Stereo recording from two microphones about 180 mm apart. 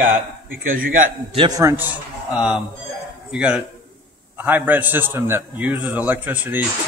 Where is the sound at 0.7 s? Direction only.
50° right (ahead or behind).